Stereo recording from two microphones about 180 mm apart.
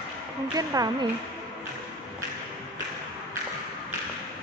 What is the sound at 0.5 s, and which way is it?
Speech, 20° right (ahead or behind).